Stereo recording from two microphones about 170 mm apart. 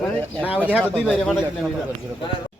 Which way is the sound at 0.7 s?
10° right (ahead or behind).